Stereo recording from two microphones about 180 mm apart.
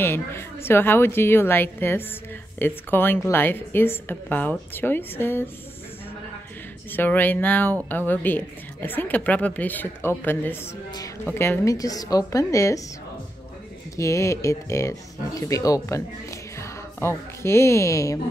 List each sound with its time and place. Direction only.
0.0 s a woman's voice: 15° left (ahead or behind)
6.9 s a woman's voice: 10° left (ahead or behind)
13.9 s a woman's voice: 15° left (ahead or behind)